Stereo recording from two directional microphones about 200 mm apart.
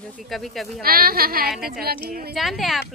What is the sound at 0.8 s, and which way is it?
Speech, 45° right (ahead or behind).